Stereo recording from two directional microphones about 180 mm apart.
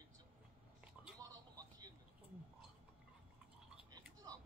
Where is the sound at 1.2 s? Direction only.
20° right (ahead or behind).